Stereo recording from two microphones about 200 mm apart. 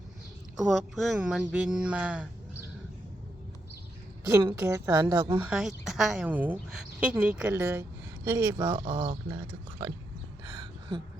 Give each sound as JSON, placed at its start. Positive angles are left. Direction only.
{"t": 0.6, "sound": "speech", "side_deg": -5}
{"t": 4.3, "sound": "speech", "side_deg": -15}
{"t": 5.3, "sound": "speech", "side_deg": -5}
{"t": 10.4, "sound": "a sound", "side_deg": -25}